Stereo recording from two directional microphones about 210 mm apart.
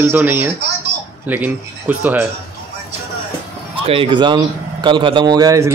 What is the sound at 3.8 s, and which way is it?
Speech, 25° right (ahead or behind).